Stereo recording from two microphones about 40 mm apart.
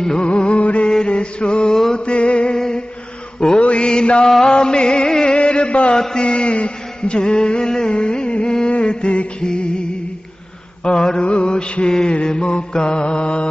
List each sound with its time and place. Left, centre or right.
0.0 s mantra: centre
0.3 s music: left
0.8 s mantra: left
2.5 s humming: centre
3.3 s mantra: centre
4.5 s music: left
5.9 s mantra: centre
6.2 s a sound: left
9.4 s music: left
10.8 s mantra: left